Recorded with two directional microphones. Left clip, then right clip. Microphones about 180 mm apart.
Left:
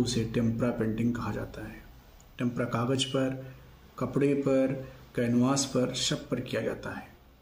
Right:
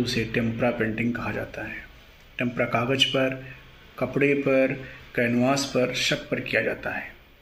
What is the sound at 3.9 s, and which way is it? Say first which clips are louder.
Speech: right 5 dB; 20° left (ahead or behind).